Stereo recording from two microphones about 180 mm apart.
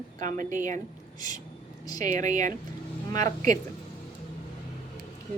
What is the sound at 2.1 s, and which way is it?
Speech, 45° right (ahead or behind).